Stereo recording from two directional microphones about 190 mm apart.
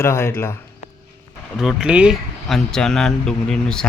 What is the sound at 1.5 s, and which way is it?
Speech, centre (ahead or behind).